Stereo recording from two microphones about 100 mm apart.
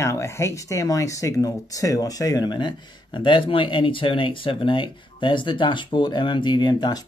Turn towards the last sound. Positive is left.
turn(degrees=45)  # may be behind; listen again after turning